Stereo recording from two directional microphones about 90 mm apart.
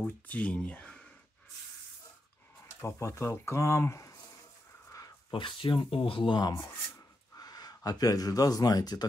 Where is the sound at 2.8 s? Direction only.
30° left (ahead or behind).